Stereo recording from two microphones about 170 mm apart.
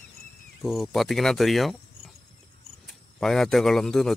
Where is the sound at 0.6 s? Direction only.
Centre (ahead or behind).